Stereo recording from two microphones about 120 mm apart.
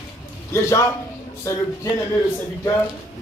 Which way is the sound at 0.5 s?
25° left (ahead or behind).